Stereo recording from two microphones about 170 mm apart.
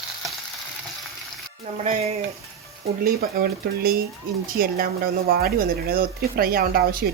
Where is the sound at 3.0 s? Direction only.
60° right (ahead or behind).